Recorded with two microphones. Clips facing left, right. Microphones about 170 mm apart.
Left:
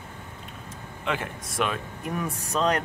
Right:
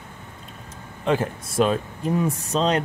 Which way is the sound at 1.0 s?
35° right (ahead or behind).